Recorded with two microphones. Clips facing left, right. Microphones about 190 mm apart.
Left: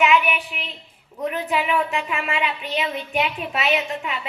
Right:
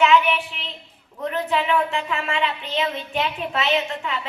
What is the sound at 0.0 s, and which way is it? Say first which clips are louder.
Child singing: right 2 dB; 15° left (ahead or behind).